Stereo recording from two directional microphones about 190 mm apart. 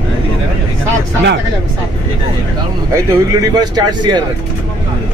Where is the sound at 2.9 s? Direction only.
20° right (ahead or behind).